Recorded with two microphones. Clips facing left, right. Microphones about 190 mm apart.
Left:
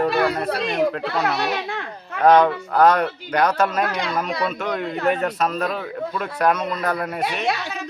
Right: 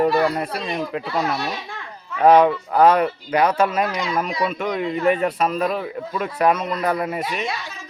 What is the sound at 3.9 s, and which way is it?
Speech, 60° left (ahead or behind).